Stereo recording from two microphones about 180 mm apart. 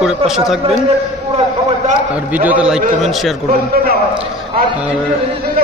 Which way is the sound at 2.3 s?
10° right (ahead or behind).